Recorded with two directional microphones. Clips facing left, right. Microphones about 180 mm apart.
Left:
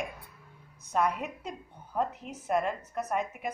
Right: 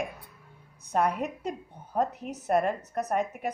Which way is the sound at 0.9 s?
55° right (ahead or behind).